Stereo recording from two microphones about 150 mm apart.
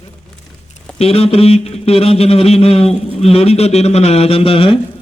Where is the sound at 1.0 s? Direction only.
40° left (ahead or behind).